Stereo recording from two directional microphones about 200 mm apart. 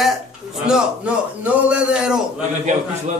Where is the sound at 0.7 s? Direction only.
5° right (ahead or behind).